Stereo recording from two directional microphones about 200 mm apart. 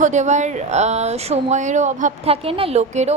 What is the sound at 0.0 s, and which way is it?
A woman's voice, 35° right (ahead or behind).